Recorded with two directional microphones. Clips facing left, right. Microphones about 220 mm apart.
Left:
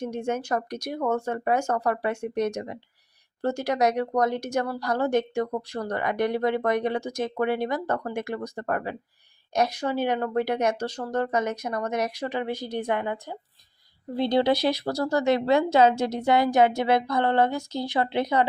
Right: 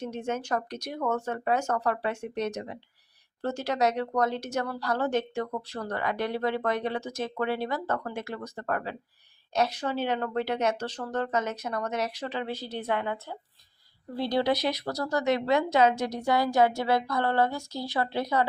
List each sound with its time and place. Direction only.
0.0 s speech: 10° left (ahead or behind)